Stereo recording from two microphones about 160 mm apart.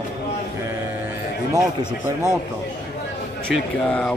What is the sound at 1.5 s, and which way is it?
Speech, 20° right (ahead or behind).